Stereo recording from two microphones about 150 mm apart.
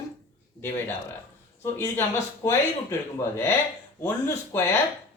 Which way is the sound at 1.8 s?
15° left (ahead or behind).